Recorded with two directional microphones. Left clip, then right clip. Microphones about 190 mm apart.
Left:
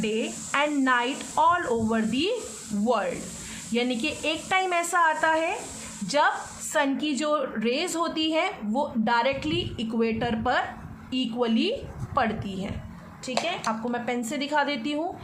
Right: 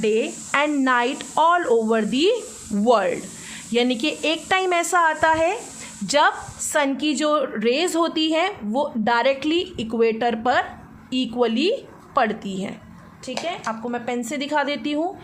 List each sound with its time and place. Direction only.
0.0 s a woman's voice: 45° right (ahead or behind)
13.4 s a woman's voice: 25° right (ahead or behind)